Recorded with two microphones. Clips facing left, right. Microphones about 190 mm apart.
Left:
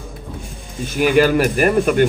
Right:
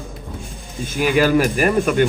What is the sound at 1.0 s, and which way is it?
Speech, 50° left (ahead or behind).